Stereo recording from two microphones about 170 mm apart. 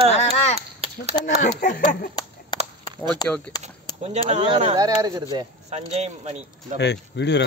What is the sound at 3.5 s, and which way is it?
Speech, 25° left (ahead or behind).